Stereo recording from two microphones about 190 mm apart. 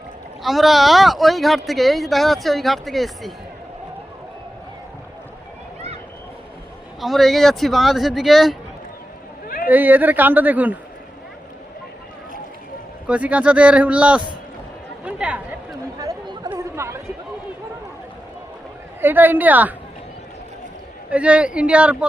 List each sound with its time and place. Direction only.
0.4 s speech: centre (ahead or behind)
7.0 s speech: centre (ahead or behind)
9.6 s speech: 10° right (ahead or behind)
13.1 s speech: 5° right (ahead or behind)
16.0 s chatter: 20° right (ahead or behind)
19.0 s speech: 10° right (ahead or behind)
21.1 s speech: 5° right (ahead or behind)